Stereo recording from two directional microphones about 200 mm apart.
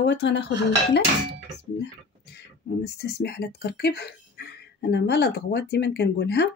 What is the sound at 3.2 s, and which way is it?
Speech, 55° left (ahead or behind).